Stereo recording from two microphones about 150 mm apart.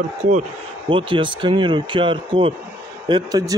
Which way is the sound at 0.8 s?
35° right (ahead or behind).